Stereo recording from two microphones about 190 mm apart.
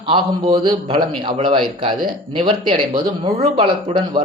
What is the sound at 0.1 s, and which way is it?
Speech, 30° right (ahead or behind).